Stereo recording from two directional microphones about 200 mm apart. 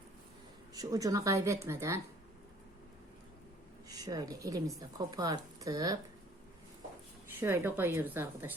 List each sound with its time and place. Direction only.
0.7 s a woman's voice: 20° right (ahead or behind)
3.8 s a woman's voice: 20° right (ahead or behind)
7.3 s a woman's voice: 10° right (ahead or behind)